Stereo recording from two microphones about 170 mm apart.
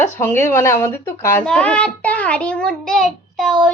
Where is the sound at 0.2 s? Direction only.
15° left (ahead or behind).